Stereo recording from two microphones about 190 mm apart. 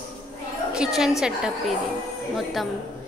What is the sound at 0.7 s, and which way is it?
Speech, centre (ahead or behind).